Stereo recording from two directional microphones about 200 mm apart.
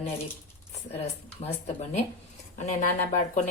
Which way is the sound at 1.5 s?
35° left (ahead or behind).